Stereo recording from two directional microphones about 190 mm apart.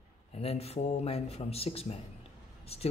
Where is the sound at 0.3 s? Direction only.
30° left (ahead or behind).